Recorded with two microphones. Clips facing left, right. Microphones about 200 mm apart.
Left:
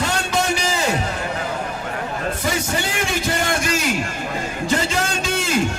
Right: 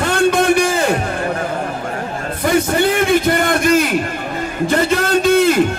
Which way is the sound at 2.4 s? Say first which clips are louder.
Right 13 dB; 55° right (ahead or behind).